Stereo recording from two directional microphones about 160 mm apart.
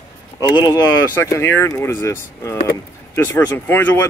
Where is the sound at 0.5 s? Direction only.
20° left (ahead or behind).